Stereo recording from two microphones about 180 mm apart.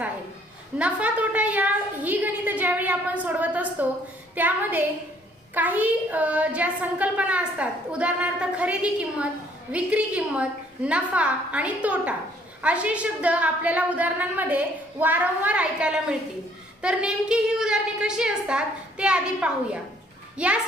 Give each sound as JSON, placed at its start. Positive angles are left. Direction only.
{"t": 0.8, "sound": "a child's voice", "side_deg": -5}